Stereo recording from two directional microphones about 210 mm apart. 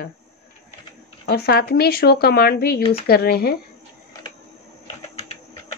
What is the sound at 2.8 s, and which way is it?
Speech, 30° left (ahead or behind).